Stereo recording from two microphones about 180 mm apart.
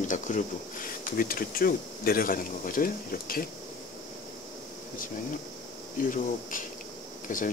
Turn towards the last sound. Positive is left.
turn(degrees=50)  # may be behind; listen again after turning